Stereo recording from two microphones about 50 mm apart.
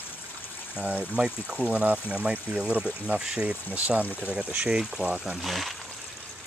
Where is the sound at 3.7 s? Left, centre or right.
Right.